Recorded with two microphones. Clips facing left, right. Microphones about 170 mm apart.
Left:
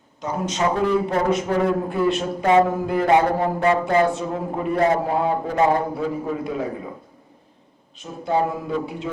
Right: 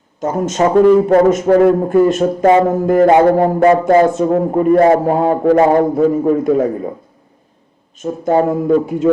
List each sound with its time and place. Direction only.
0.2 s speech: 45° right (ahead or behind)
7.9 s speech: 45° right (ahead or behind)